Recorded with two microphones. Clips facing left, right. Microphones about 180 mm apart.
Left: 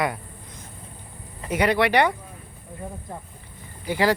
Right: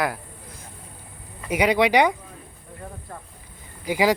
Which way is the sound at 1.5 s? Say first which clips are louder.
Right 1 dB; 15° right (ahead or behind).